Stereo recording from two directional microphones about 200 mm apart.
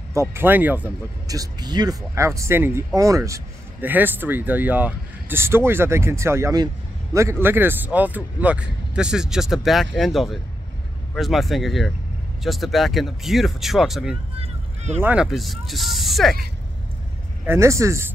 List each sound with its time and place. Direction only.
0.1 s speech: 15° right (ahead or behind)
14.4 s vehicle: 35° right (ahead or behind)
15.0 s speech: 5° right (ahead or behind)
17.5 s speech: 15° right (ahead or behind)